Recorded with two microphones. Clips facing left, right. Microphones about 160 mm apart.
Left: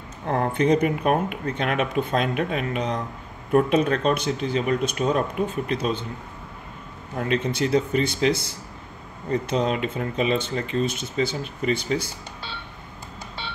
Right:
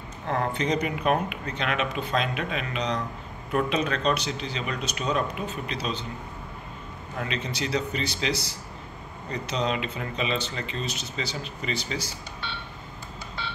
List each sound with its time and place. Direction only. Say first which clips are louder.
0.3 s speech: left 6 dB; 50° left (ahead or behind)
7.2 s speech: left 7 dB; 50° left (ahead or behind)